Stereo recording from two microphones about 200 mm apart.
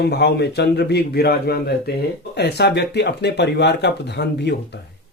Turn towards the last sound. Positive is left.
turn(degrees=55)  # may be behind; listen again after turning